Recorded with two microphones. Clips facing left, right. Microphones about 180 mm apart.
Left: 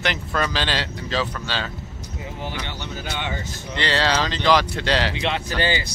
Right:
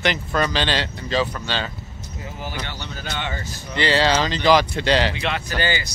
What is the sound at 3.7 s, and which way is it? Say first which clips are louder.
Speech: right 3 dB; 5° right (ahead or behind).